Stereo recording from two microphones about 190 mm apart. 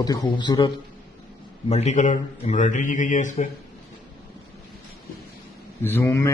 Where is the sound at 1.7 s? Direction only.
35° left (ahead or behind).